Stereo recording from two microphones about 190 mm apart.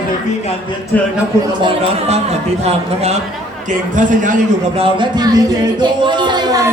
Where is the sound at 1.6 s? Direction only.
30° right (ahead or behind).